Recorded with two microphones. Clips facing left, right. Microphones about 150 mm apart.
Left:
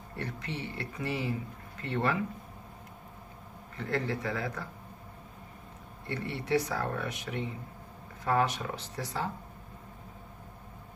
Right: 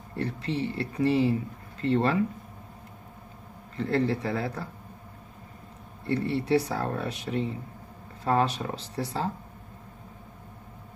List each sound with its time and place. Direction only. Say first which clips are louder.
0.1 s speech: right 8 dB; 30° right (ahead or behind)
3.7 s speech: right 7 dB; 30° right (ahead or behind)
6.0 s speech: right 7 dB; 30° right (ahead or behind)